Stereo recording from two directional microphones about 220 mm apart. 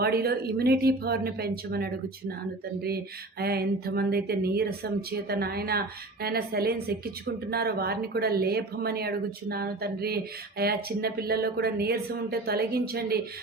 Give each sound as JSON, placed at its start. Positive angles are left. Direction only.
{"t": 0.0, "sound": "speech", "side_deg": -45}